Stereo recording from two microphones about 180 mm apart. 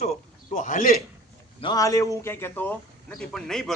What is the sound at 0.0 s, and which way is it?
Speech, 40° left (ahead or behind).